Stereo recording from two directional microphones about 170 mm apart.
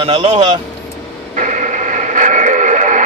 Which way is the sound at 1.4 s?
45° right (ahead or behind).